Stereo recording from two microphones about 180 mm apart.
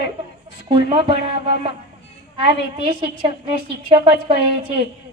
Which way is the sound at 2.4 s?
30° right (ahead or behind).